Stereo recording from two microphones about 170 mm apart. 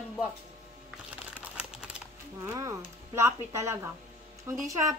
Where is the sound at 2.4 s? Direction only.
15° right (ahead or behind).